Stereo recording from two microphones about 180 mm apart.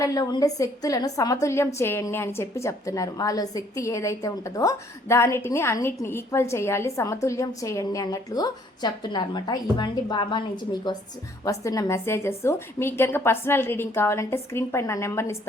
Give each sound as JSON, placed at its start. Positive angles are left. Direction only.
{"t": 0.0, "sound": "a woman's voice", "side_deg": 20}